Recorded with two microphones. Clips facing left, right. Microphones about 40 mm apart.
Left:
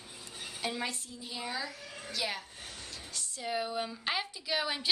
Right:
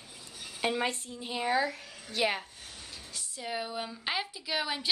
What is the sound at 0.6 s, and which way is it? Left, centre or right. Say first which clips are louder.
Speech: right 6 dB; right.